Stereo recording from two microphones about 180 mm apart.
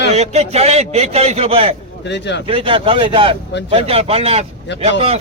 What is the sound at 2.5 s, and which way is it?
Speech, 30° right (ahead or behind).